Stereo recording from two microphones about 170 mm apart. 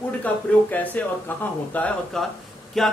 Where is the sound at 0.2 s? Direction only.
10° left (ahead or behind).